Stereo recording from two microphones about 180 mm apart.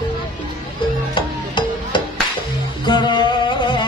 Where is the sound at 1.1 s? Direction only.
25° left (ahead or behind).